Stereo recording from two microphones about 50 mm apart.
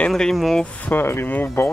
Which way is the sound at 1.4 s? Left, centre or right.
Left.